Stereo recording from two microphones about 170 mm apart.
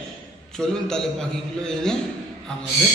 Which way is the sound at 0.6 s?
5° left (ahead or behind).